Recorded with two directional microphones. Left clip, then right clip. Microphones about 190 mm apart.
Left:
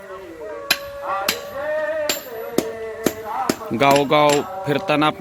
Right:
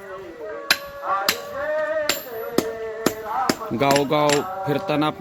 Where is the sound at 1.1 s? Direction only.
35° left (ahead or behind).